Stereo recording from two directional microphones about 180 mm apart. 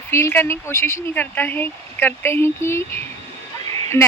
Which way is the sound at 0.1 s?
15° left (ahead or behind).